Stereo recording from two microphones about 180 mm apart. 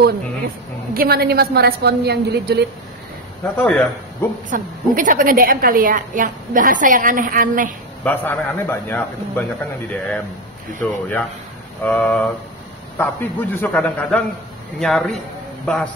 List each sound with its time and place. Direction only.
0.9 s a woman's voice: 60° right (ahead or behind)
3.5 s a man's voice: 10° left (ahead or behind)
4.5 s a woman's voice: 45° right (ahead or behind)
8.0 s a man's voice: 10° left (ahead or behind)
10.8 s a man's voice: 10° left (ahead or behind)